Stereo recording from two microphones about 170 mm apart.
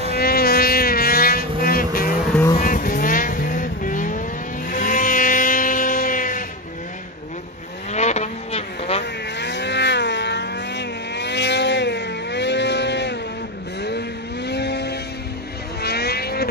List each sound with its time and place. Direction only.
0.1 s boat: 60° left (ahead or behind)
2.6 s vehicle: 55° left (ahead or behind)
7.9 s vehicle: 40° left (ahead or behind)
9.4 s vehicle: 90° left
13.8 s vehicle: 80° left